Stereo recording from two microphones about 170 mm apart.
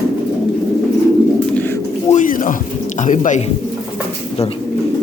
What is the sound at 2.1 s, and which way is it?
Speech, 50° left (ahead or behind).